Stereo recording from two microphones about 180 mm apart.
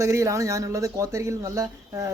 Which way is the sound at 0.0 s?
15° right (ahead or behind).